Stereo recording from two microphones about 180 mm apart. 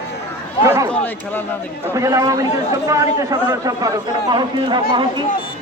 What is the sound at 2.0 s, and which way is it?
A man's voice, 20° right (ahead or behind).